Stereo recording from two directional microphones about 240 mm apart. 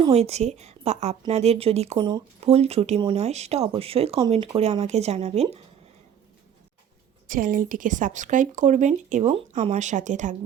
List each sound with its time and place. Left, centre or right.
0.0 s a woman's voice: right
7.3 s speech: right